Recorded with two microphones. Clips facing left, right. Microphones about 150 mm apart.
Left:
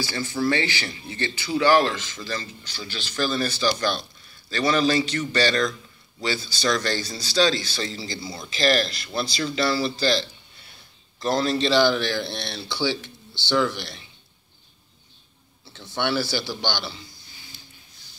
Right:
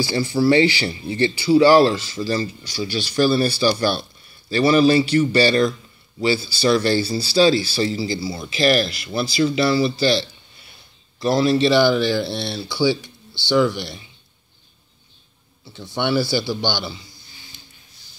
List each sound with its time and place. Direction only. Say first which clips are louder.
0.0 s speech: right 7 dB; 15° right (ahead or behind)
11.1 s speech: right 6 dB; 10° right (ahead or behind)
15.7 s speech: right 4 dB; 15° right (ahead or behind)